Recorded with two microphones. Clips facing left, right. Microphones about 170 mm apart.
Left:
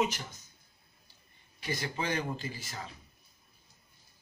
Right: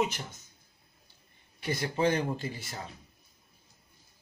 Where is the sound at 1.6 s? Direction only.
50° right (ahead or behind).